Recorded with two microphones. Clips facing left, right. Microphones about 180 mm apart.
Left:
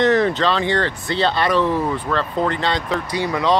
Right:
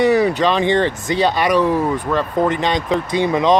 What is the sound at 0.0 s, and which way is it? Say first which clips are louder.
Speech: right 2 dB; 10° right (ahead or behind).